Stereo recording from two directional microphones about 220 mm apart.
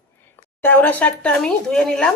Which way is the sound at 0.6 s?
10° left (ahead or behind).